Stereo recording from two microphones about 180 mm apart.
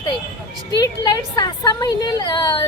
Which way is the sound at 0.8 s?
25° left (ahead or behind).